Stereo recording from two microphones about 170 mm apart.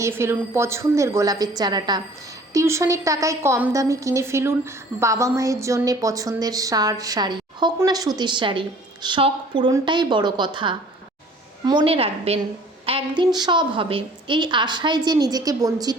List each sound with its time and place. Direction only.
0.0 s a woman's voice: 15° right (ahead or behind)